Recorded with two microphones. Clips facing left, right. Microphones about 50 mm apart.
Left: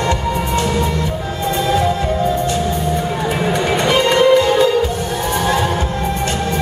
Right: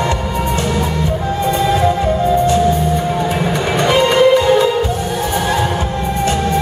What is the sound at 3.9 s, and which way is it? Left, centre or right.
Music, centre.